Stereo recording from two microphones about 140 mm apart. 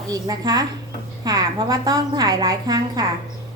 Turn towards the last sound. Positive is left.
turn(degrees=-25)  # may be behind; listen again after turning